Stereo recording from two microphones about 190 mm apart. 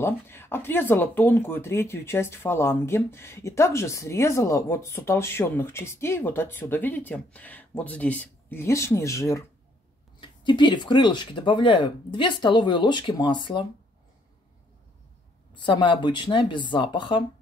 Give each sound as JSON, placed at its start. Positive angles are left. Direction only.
{"t": 0.0, "sound": "speech", "side_deg": 10}
{"t": 15.6, "sound": "speech", "side_deg": 25}